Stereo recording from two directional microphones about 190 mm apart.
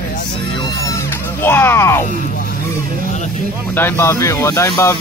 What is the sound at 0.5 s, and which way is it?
Music, 20° left (ahead or behind).